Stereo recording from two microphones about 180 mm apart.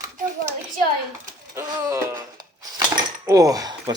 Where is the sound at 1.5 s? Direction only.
20° right (ahead or behind).